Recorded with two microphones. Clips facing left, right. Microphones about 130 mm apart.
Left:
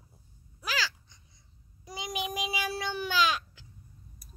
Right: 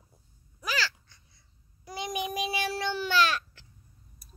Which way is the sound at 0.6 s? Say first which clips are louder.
Right 2 dB; 10° left (ahead or behind).